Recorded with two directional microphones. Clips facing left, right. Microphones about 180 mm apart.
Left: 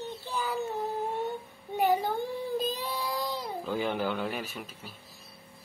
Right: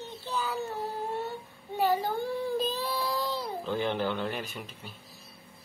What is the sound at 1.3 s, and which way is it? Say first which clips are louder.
Child singing: left 2 dB; 20° left (ahead or behind).